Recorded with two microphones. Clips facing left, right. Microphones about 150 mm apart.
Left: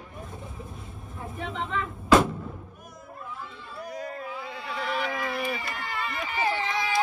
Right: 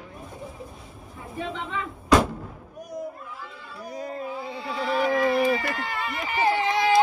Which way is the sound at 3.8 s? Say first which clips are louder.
Right 4 dB; 30° right (ahead or behind).